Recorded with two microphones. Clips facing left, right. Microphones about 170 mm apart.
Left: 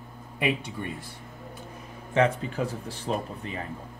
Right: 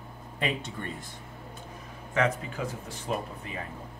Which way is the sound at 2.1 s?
30° left (ahead or behind).